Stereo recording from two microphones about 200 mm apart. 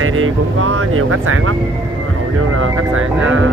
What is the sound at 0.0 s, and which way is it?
Speech, 90° right.